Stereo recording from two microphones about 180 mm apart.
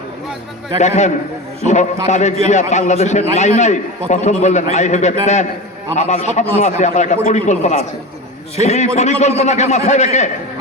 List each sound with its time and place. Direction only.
0.8 s a man's voice: 40° left (ahead or behind)